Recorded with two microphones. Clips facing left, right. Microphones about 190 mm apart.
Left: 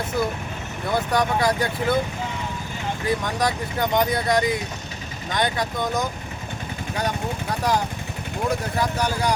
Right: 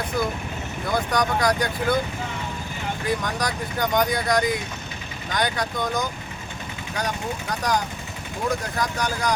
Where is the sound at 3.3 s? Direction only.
25° left (ahead or behind).